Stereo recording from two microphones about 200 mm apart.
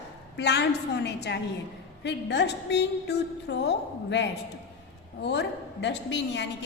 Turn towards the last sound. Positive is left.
turn(degrees=60)  # may be behind; listen again after turning